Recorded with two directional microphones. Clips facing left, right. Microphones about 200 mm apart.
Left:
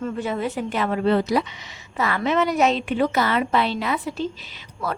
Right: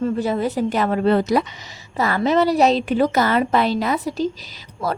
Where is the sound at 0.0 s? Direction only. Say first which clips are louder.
Right 5 dB; 35° right (ahead or behind).